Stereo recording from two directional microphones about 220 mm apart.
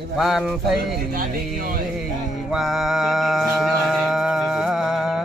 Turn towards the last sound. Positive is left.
turn(degrees=0)  # may be behind; listen again after turning